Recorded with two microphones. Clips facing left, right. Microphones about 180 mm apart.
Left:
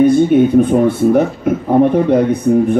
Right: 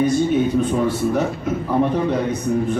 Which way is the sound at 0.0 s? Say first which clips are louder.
Left 8 dB; 55° left (ahead or behind).